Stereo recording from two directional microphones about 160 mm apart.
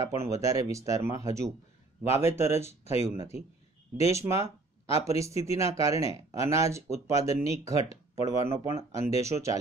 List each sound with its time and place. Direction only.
0.0 s speech: 20° right (ahead or behind)
2.8 s speech: 40° left (ahead or behind)
4.1 s speech: 20° right (ahead or behind)